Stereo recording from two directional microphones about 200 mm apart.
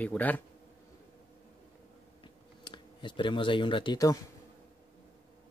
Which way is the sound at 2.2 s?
25° left (ahead or behind).